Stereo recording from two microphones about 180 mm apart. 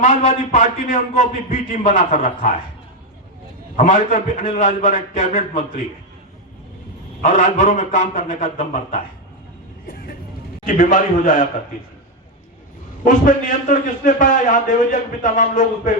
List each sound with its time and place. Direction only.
0.0 s a man's voice: 40° left (ahead or behind)
3.8 s a man's voice: 45° left (ahead or behind)
7.2 s a man's voice: 40° left (ahead or behind)
9.8 s vehicle: 60° left (ahead or behind)
10.7 s a man's voice: 50° left (ahead or behind)
13.1 s a man's voice: 50° left (ahead or behind)